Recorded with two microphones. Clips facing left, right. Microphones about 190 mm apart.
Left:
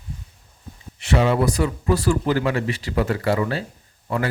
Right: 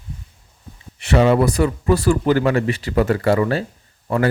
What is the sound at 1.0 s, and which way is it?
A man's voice, 60° right (ahead or behind).